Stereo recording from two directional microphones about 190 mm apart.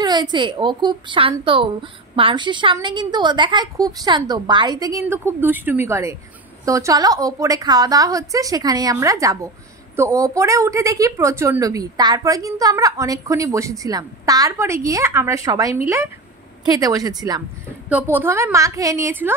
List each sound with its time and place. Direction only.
0.0 s a woman's voice: 20° right (ahead or behind)
17.8 s a woman's voice: 10° right (ahead or behind)